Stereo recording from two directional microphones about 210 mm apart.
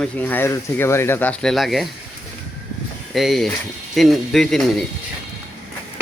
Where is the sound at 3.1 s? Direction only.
Centre (ahead or behind).